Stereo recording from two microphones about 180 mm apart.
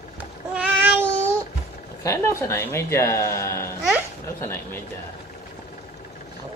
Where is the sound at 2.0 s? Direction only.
15° left (ahead or behind).